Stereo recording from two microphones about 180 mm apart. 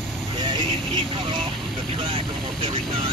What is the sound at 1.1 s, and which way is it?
Speech, 30° right (ahead or behind).